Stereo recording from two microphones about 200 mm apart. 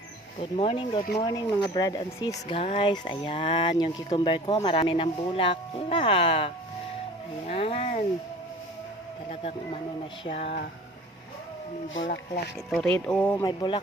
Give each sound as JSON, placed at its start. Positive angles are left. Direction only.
{"t": 0.3, "sound": "speech", "side_deg": 30}
{"t": 9.3, "sound": "speech", "side_deg": 30}
{"t": 11.9, "sound": "speech", "side_deg": 70}
{"t": 13.1, "sound": "speech", "side_deg": 5}
{"t": 13.4, "sound": "speech", "side_deg": 20}